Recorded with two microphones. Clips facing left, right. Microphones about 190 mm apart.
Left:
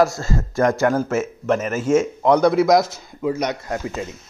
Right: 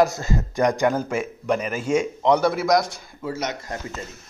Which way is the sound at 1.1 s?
45° left (ahead or behind).